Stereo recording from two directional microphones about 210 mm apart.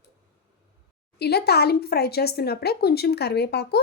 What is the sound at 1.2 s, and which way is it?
A woman's voice, 50° left (ahead or behind).